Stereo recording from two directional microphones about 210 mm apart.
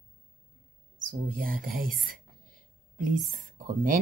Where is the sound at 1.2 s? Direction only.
40° right (ahead or behind).